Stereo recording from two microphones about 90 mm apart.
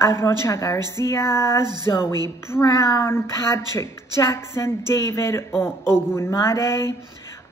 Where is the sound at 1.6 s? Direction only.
50° right (ahead or behind).